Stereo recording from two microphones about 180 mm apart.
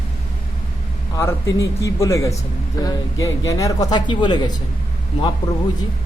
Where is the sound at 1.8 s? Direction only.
15° left (ahead or behind).